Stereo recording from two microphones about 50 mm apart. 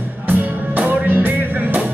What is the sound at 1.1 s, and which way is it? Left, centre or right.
Music, right.